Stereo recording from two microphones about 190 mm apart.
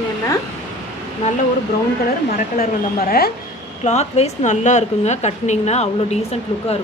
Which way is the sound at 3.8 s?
35° left (ahead or behind).